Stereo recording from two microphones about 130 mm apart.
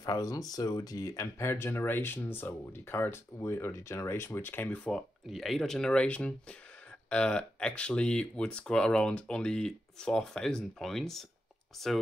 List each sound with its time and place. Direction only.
0.0 s speech: 30° left (ahead or behind); by 11.2 s centre (ahead or behind)